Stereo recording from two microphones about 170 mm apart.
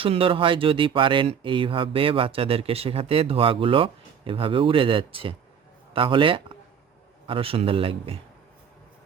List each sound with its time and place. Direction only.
0.0 s speech: 30° right (ahead or behind)